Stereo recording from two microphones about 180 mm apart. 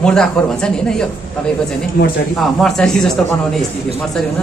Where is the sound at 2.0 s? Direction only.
60° left (ahead or behind).